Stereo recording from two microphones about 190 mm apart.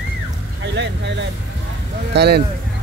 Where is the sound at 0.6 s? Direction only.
70° right (ahead or behind).